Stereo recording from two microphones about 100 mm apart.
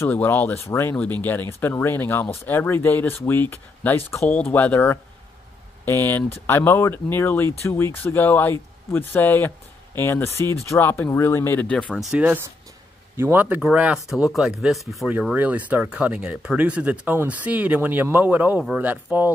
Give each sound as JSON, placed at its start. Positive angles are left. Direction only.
{"t": 0.1, "sound": "speech", "side_deg": 20}
{"t": 11.7, "sound": "speech", "side_deg": 10}
{"t": 12.2, "sound": "speech", "side_deg": -15}
{"t": 13.6, "sound": "speech", "side_deg": -5}
{"t": 15.0, "sound": "speech", "side_deg": -15}